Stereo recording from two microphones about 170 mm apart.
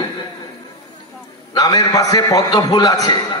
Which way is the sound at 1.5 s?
20° left (ahead or behind).